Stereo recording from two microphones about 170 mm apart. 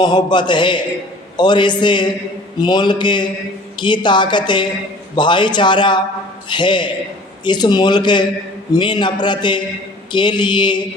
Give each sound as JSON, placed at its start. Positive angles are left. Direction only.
{"t": 0.0, "sound": "a woman's voice", "side_deg": 25}